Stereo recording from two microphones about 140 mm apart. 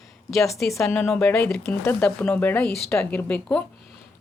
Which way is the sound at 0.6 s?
5° left (ahead or behind).